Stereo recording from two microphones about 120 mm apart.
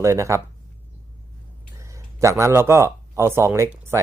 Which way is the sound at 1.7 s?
25° right (ahead or behind).